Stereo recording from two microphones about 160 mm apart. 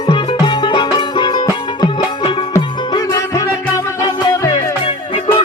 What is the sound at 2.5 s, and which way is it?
Music, 20° left (ahead or behind).